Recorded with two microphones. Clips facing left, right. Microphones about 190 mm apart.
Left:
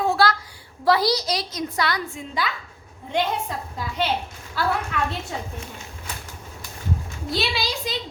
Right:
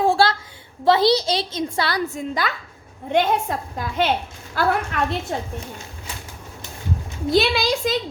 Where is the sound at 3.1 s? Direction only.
55° right (ahead or behind).